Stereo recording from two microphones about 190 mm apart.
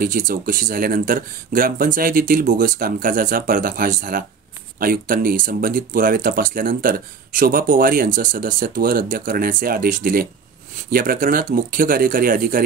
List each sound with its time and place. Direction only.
0.0 s speech: 50° right (ahead or behind)